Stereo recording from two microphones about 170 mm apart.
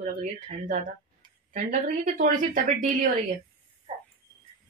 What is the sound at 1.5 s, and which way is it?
Speech, 50° right (ahead or behind).